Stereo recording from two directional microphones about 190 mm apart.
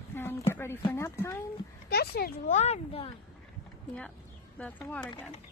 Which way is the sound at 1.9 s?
55° left (ahead or behind).